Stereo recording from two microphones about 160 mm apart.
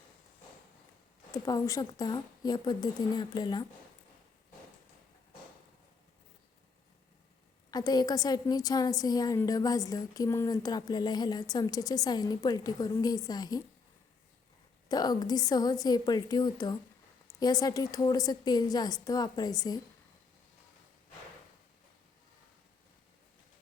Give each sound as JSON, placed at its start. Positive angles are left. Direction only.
{"t": 1.3, "sound": "a woman's voice", "side_deg": 20}
{"t": 7.7, "sound": "a woman's voice", "side_deg": 25}
{"t": 14.8, "sound": "a woman's voice", "side_deg": 25}